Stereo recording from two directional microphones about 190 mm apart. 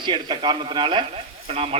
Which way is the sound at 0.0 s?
25° right (ahead or behind).